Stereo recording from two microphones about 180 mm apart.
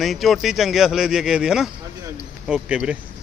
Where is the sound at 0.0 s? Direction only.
Centre (ahead or behind).